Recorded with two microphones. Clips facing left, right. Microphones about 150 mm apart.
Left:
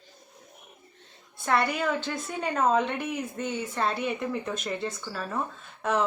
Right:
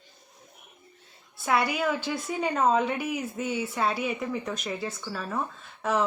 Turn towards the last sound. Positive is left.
turn(degrees=0)  # may be behind; listen again after turning